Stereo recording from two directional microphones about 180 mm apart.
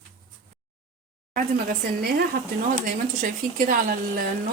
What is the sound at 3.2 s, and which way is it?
Speech, 45° right (ahead or behind).